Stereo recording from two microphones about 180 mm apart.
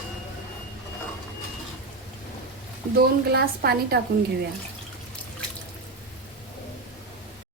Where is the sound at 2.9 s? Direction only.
65° right (ahead or behind).